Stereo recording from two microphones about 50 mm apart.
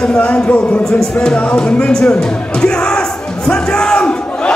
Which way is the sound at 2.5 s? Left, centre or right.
Centre.